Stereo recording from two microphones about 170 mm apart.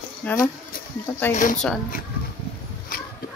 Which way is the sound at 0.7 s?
55° left (ahead or behind).